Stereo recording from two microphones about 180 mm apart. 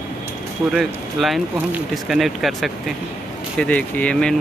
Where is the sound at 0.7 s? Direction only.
Centre (ahead or behind).